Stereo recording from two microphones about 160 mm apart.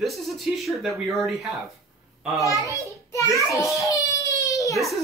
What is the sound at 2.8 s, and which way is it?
Baby cry, 20° left (ahead or behind).